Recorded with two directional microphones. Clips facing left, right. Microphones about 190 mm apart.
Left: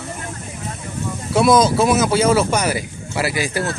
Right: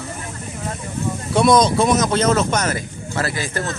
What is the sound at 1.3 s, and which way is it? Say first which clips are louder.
Speech: left 1 dB; 5° left (ahead or behind).